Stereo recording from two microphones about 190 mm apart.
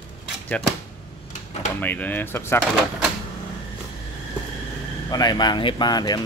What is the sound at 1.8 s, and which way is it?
Speech, 10° left (ahead or behind).